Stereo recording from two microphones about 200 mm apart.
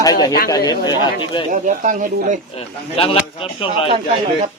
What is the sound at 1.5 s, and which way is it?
Speech, 40° right (ahead or behind).